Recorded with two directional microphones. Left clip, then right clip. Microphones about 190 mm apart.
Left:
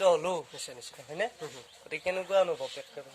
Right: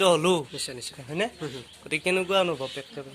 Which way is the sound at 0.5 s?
20° left (ahead or behind).